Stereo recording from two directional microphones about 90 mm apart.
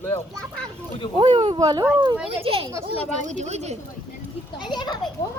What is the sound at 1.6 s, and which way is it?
Speech, 45° right (ahead or behind).